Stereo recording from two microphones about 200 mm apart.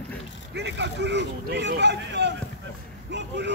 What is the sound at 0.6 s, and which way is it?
Speech, 60° right (ahead or behind).